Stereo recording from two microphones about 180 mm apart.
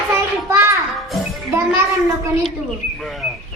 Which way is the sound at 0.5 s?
15° right (ahead or behind).